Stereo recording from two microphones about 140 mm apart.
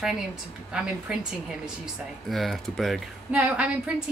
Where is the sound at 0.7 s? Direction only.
5° right (ahead or behind).